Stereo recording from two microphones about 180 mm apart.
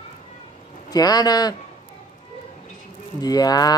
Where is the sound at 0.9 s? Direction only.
20° left (ahead or behind).